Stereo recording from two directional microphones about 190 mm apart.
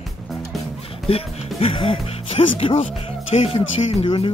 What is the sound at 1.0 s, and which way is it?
Speech, 30° left (ahead or behind).